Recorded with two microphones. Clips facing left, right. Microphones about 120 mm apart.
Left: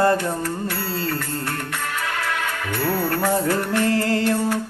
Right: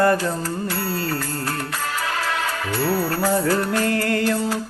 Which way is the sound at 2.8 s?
25° right (ahead or behind).